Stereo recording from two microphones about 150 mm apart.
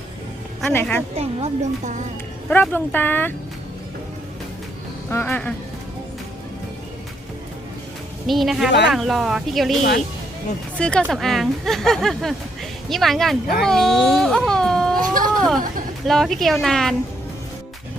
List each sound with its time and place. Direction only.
0.7 s speech: 15° left (ahead or behind)
1.1 s speech: 45° right (ahead or behind)
2.5 s speech: 10° left (ahead or behind)
5.0 s speech: 10° left (ahead or behind)
8.3 s speech: centre (ahead or behind)
10.8 s speech: 5° left (ahead or behind)